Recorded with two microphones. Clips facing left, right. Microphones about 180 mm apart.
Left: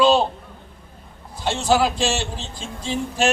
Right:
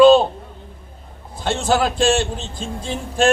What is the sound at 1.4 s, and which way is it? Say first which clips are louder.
Speech: even; 55° right (ahead or behind).